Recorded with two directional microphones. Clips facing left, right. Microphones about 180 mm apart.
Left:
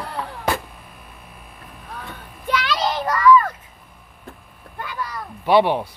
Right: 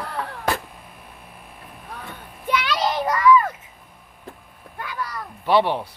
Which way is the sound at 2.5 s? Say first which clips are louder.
Even; 10° right (ahead or behind).